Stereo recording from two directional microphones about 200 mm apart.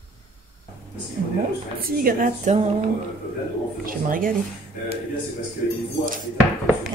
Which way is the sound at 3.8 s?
45° right (ahead or behind).